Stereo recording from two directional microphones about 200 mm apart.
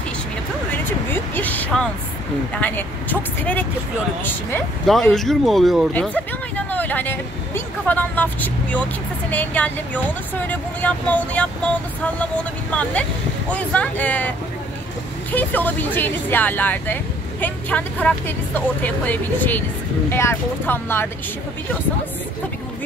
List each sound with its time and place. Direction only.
0.7 s a sound: 10° left (ahead or behind)
2.6 s speech: 10° left (ahead or behind)
13.5 s speech: 5° left (ahead or behind)
15.3 s speech: 10° left (ahead or behind)